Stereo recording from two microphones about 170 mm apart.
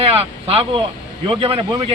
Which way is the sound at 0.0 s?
35° right (ahead or behind).